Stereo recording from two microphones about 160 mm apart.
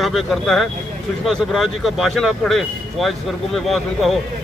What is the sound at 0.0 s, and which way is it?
A man's voice, centre (ahead or behind).